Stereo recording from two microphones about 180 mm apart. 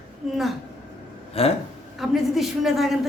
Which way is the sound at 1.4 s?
35° left (ahead or behind).